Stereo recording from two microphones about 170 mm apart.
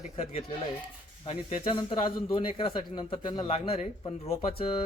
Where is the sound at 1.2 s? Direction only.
35° left (ahead or behind).